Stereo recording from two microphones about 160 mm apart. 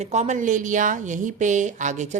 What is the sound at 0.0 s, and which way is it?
Speech, 45° right (ahead or behind).